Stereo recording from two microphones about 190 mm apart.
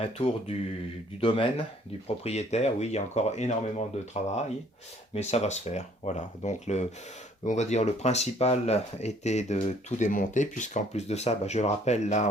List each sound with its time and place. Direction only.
0.0 s speech: 30° left (ahead or behind)